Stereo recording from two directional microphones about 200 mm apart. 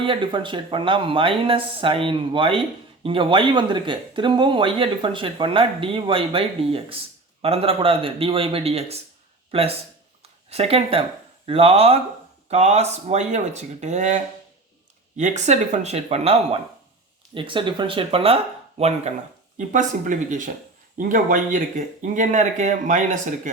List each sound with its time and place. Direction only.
0.0 s speech: 25° right (ahead or behind)